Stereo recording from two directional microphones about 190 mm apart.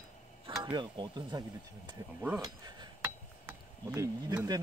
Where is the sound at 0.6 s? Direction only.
25° right (ahead or behind).